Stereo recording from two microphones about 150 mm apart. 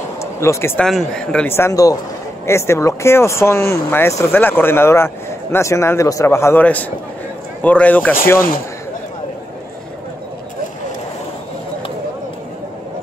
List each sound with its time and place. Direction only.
0.2 s speech: 20° left (ahead or behind)
0.8 s a man's voice: 5° left (ahead or behind)